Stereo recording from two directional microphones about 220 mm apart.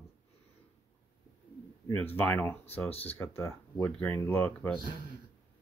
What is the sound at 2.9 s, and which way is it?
Speech, 25° left (ahead or behind).